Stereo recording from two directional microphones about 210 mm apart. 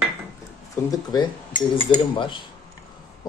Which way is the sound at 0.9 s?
20° left (ahead or behind).